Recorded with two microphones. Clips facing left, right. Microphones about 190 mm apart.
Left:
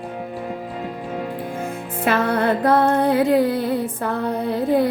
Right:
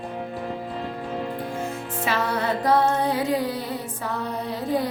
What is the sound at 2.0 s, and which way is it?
Music, 55° left (ahead or behind).